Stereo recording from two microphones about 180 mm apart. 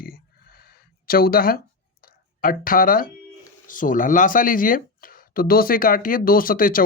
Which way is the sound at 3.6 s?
50° left (ahead or behind).